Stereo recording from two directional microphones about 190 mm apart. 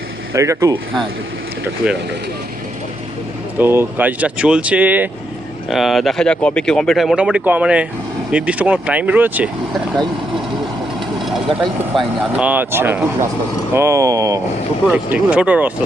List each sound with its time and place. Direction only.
0.3 s speech: 15° right (ahead or behind)
1.8 s speech: 5° right (ahead or behind)
3.6 s speech: 10° right (ahead or behind)
11.2 s vehicle: centre (ahead or behind)
11.9 s speech: 5° right (ahead or behind)